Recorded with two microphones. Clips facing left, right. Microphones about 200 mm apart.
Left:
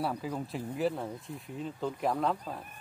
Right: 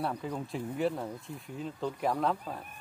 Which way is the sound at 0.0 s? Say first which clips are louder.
Left 1 dB; 5° left (ahead or behind).